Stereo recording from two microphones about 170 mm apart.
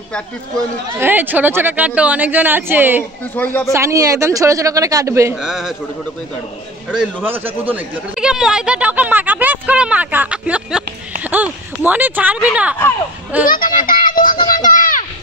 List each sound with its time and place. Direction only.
0.9 s speech: 10° right (ahead or behind)
3.3 s speech: 10° left (ahead or behind)
3.7 s speech: 15° right (ahead or behind)
5.3 s a man's voice: centre (ahead or behind)
6.9 s speech: 5° right (ahead or behind)
13.4 s a sound: 55° left (ahead or behind)